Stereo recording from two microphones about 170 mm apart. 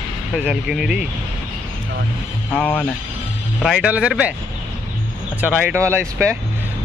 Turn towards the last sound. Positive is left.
turn(degrees=-15)  # may be behind; listen again after turning